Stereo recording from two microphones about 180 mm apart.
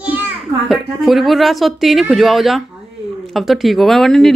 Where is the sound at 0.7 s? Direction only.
Centre (ahead or behind).